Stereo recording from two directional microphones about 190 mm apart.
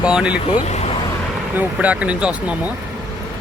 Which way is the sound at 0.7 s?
35° left (ahead or behind).